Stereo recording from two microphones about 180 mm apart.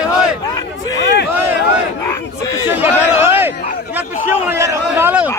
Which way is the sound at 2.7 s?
10° right (ahead or behind).